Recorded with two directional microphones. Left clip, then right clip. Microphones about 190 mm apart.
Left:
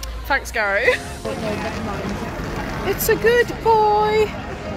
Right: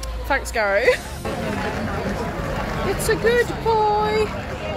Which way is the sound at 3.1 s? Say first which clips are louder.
Left 3 dB; 15° left (ahead or behind).